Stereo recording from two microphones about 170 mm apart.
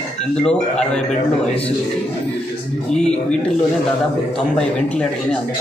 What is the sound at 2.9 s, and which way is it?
A man's voice, 5° left (ahead or behind).